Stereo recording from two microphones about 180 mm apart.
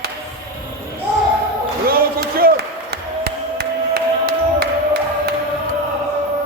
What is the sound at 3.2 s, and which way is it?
Music, 60° right (ahead or behind).